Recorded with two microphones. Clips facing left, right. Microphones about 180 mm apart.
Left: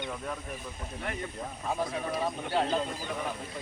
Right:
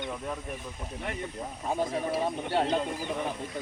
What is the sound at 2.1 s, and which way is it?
Speech, 30° right (ahead or behind).